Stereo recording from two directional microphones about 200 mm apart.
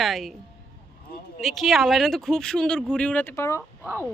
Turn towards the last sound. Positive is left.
turn(degrees=-10)  # may be behind; listen again after turning